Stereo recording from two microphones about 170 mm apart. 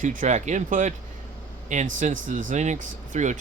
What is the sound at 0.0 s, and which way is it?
Speech, 50° right (ahead or behind).